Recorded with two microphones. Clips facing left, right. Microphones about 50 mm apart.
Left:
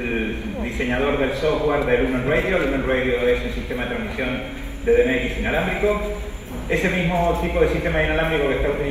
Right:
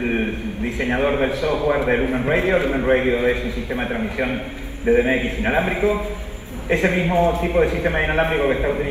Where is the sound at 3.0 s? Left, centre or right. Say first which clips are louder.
Even; right.